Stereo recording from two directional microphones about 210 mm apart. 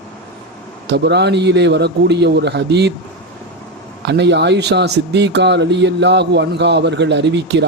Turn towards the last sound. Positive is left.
turn(degrees=-55)  # may be behind; listen again after turning